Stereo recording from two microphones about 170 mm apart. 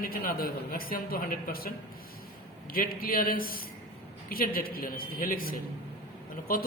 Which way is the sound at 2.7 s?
60° left (ahead or behind).